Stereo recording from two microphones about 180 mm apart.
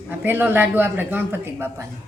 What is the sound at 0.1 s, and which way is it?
A woman's voice, 10° right (ahead or behind).